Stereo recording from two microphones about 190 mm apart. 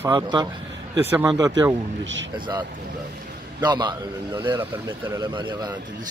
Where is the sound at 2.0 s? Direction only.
75° right (ahead or behind).